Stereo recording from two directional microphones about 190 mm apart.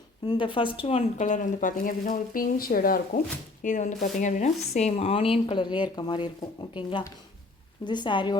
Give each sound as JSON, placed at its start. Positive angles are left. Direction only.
{"t": 0.3, "sound": "a woman's voice", "side_deg": 25}